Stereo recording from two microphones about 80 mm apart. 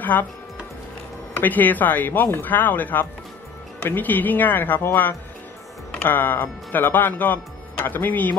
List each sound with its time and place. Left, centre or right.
0.0 s speech: left
1.4 s speech: left